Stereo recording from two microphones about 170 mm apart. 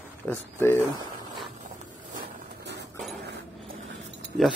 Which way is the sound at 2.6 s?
90° right.